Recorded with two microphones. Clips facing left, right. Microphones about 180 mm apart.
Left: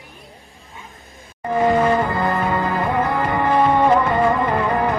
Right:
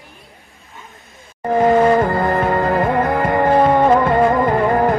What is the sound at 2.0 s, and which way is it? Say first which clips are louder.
Music: right 4 dB; 45° right (ahead or behind).